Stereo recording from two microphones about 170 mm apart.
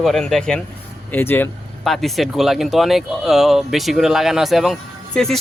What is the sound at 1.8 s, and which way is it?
Speech, centre (ahead or behind).